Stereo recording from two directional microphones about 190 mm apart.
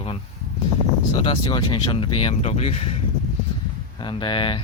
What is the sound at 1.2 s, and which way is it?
Speech, 25° left (ahead or behind).